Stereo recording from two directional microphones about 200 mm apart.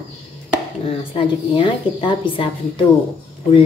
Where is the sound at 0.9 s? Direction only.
25° left (ahead or behind).